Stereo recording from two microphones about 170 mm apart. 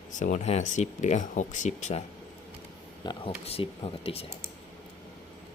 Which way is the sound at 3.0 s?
30° left (ahead or behind).